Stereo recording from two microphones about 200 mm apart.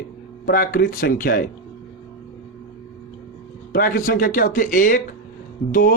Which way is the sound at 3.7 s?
45° left (ahead or behind).